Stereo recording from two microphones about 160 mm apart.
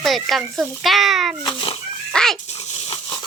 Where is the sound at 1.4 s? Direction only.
25° left (ahead or behind).